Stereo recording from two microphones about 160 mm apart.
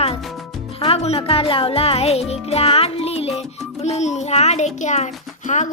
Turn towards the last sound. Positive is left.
turn(degrees=50)  # may be behind; listen again after turning